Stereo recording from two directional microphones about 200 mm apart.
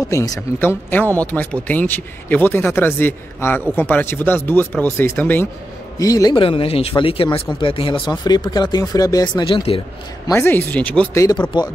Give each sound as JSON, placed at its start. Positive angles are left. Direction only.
{"t": 0.1, "sound": "speech", "side_deg": 15}
{"t": 10.2, "sound": "speech", "side_deg": 10}